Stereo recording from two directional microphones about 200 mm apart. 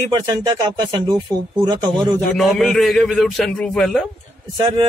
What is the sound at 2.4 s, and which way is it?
A man's voice, centre (ahead or behind).